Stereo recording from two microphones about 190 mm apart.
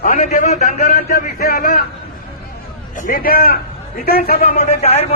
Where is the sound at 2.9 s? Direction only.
45° left (ahead or behind).